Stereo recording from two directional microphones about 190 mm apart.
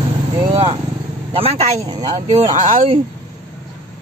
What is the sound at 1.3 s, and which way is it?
Speech, 30° right (ahead or behind).